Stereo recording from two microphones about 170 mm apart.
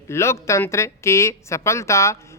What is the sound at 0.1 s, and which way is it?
Speech, 15° left (ahead or behind).